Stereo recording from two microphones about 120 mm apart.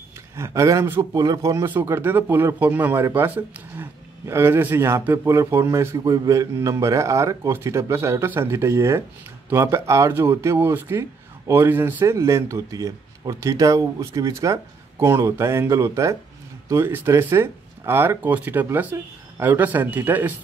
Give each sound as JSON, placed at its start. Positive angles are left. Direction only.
{"t": 0.4, "sound": "speech", "side_deg": -25}